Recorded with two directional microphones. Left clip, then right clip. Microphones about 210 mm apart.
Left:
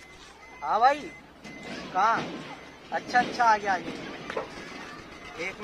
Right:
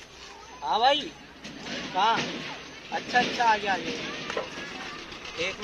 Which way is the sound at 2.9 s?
5° left (ahead or behind).